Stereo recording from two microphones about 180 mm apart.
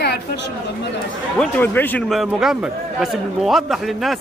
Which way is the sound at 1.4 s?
10° left (ahead or behind).